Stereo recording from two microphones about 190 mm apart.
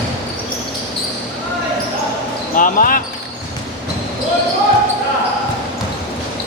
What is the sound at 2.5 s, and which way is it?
Speech, 45° left (ahead or behind).